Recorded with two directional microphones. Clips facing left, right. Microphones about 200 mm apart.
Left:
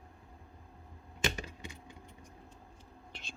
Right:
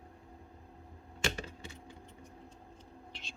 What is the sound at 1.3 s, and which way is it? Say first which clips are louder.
Computer keyboard: even; 15° left (ahead or behind).